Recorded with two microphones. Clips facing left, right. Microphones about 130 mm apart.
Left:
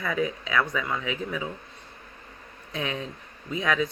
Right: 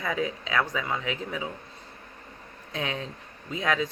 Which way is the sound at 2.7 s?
30° right (ahead or behind).